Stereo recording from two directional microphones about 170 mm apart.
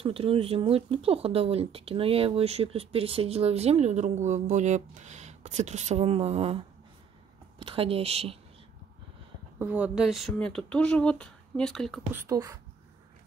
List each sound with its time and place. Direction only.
0.0 s speech: 35° right (ahead or behind)
9.6 s speech: 10° right (ahead or behind)
12.1 s speech: 15° right (ahead or behind)